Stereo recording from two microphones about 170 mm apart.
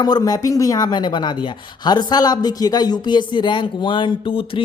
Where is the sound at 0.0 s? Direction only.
25° left (ahead or behind).